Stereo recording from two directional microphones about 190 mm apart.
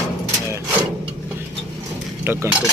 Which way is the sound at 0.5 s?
10° right (ahead or behind).